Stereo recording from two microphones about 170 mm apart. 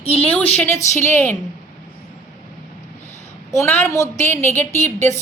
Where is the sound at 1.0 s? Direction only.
15° left (ahead or behind).